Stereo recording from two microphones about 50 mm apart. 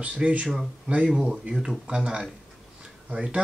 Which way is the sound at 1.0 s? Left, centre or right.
Centre.